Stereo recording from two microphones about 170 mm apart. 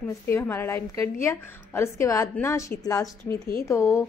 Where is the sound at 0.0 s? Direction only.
15° left (ahead or behind).